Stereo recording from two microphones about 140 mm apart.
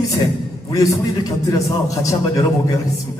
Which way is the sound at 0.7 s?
25° left (ahead or behind).